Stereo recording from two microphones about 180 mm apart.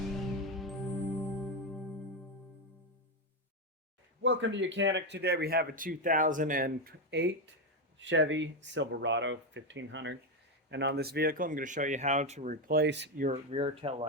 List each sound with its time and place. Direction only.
0.5 s music: centre (ahead or behind)
4.2 s speech: 90° right; by 7.5 s 75° right (ahead or behind)
7.9 s speech: 90° right
10.7 s speech: 70° right (ahead or behind)
13.3 s speech: 30° right (ahead or behind)